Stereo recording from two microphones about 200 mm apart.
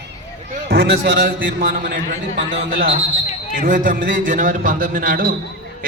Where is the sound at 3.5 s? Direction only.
40° right (ahead or behind).